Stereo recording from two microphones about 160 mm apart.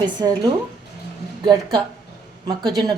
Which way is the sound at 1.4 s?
30° right (ahead or behind).